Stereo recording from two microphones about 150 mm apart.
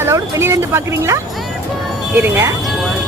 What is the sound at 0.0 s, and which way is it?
Speech, 15° right (ahead or behind).